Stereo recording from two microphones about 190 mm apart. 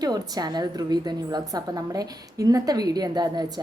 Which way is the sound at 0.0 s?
20° right (ahead or behind).